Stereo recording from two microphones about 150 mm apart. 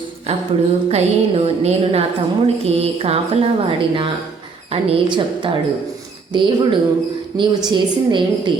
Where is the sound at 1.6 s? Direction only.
40° right (ahead or behind).